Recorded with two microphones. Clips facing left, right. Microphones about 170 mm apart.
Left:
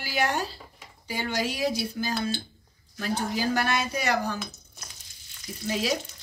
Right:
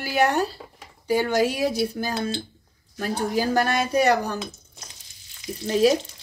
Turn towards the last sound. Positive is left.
turn(degrees=-35)  # may be behind; listen again after turning